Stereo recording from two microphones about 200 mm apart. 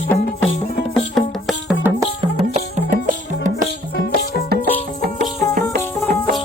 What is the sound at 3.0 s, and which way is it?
Music, 40° right (ahead or behind).